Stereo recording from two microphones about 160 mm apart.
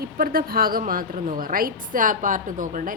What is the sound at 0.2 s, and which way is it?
A woman's voice, 65° right (ahead or behind).